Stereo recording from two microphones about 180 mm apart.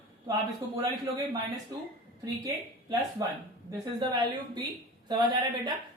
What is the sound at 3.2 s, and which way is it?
Speech, 20° right (ahead or behind).